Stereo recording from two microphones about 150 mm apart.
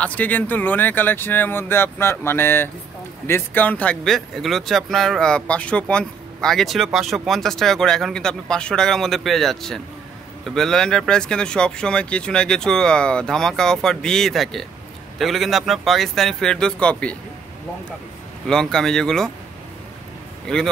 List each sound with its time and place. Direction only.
0.0 s speech: 10° left (ahead or behind)
18.5 s speech: 5° left (ahead or behind)
20.5 s speech: 5° left (ahead or behind)